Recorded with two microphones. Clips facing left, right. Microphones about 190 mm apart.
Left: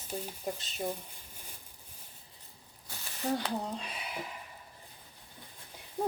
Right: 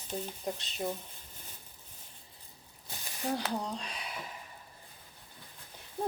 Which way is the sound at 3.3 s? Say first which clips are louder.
Left 1 dB; centre (ahead or behind).